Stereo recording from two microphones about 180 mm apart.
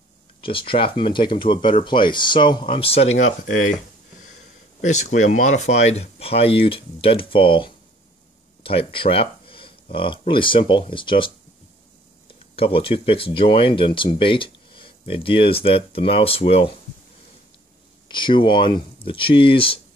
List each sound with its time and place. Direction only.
0.4 s speech: 30° left (ahead or behind); by 3.7 s 45° left (ahead or behind)
4.8 s speech: 40° left (ahead or behind)
18.0 s speech: 25° left (ahead or behind)